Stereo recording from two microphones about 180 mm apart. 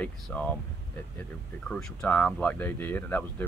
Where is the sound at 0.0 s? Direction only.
10° left (ahead or behind).